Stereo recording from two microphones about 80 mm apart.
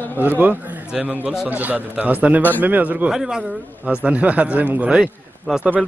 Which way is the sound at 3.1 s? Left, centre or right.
Centre.